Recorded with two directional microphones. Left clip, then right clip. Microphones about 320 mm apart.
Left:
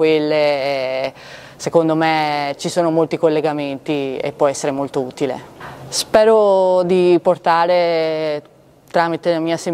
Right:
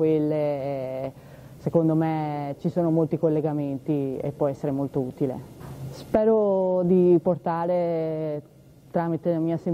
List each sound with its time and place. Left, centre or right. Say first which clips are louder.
0.0 s speech: left 9 dB; centre